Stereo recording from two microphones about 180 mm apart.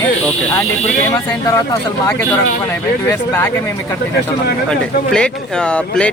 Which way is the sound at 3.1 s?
10° left (ahead or behind).